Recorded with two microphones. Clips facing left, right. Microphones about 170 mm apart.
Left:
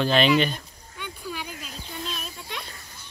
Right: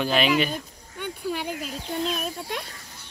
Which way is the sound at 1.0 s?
55° right (ahead or behind).